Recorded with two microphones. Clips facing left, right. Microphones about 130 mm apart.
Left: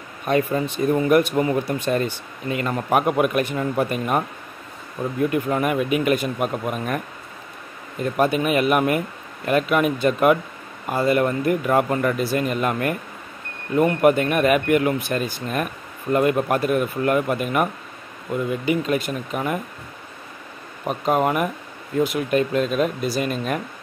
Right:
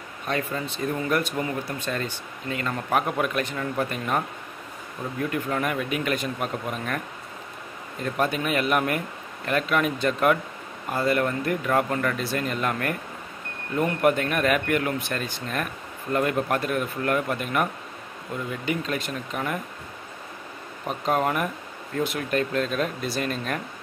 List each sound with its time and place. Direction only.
0.3 s speech: 15° left (ahead or behind)
5.3 s speech: 10° left (ahead or behind)
8.0 s speech: 10° left (ahead or behind)
13.7 s speech: 10° left (ahead or behind)
18.7 s speech: 10° left (ahead or behind)
20.8 s speech: 10° left (ahead or behind)